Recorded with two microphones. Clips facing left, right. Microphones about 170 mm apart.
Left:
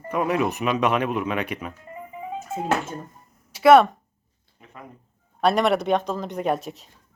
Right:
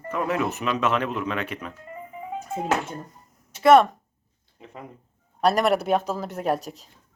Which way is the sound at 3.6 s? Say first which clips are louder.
Left 1 dB; centre (ahead or behind).